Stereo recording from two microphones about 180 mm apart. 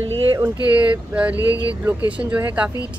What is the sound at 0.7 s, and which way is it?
A woman's voice, 10° right (ahead or behind).